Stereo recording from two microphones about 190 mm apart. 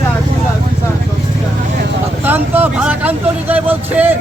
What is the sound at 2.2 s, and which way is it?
Speech, 10° right (ahead or behind).